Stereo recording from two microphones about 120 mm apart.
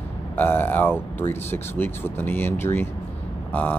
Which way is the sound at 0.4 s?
15° left (ahead or behind).